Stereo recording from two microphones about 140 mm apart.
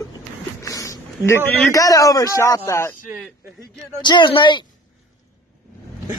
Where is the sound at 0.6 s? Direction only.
25° left (ahead or behind).